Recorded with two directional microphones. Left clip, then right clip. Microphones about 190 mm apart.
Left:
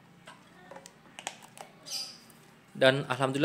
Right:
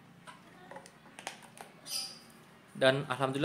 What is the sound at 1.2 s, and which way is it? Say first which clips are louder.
Typing: left 3 dB; 30° left (ahead or behind).